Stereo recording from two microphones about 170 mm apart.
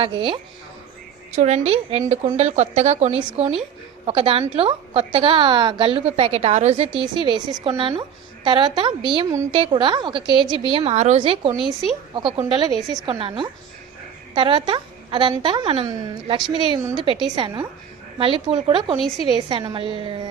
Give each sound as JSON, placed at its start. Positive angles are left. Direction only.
{"t": 0.0, "sound": "a woman's voice", "side_deg": -30}
{"t": 1.4, "sound": "a woman's voice", "side_deg": -40}
{"t": 11.6, "sound": "speech", "side_deg": 0}
{"t": 12.5, "sound": "a woman's voice", "side_deg": -25}